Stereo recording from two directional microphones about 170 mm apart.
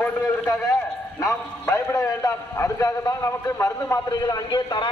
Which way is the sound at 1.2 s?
15° left (ahead or behind).